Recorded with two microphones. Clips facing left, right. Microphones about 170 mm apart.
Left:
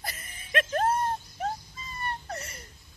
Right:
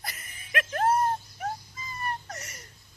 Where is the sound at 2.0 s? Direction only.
30° left (ahead or behind).